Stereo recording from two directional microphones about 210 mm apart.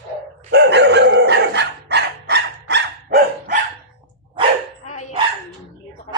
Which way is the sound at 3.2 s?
40° right (ahead or behind).